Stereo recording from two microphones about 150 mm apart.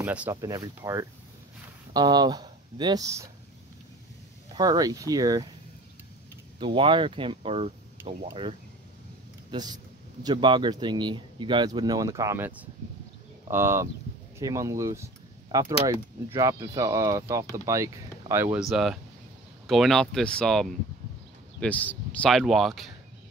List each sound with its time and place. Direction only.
0.0 s speech: 10° right (ahead or behind)
0.3 s speech: 20° right (ahead or behind)
4.6 s speech: 25° right (ahead or behind)
6.6 s speech: 35° right (ahead or behind)
16.3 s speech: 20° right (ahead or behind)
18.6 s speech: centre (ahead or behind)